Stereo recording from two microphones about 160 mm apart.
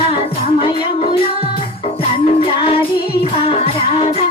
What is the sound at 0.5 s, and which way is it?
Music, 35° left (ahead or behind).